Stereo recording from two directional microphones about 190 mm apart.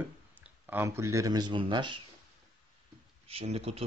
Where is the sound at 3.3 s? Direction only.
30° right (ahead or behind).